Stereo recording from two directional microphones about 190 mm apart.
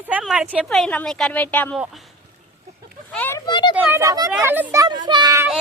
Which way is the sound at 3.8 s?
10° right (ahead or behind).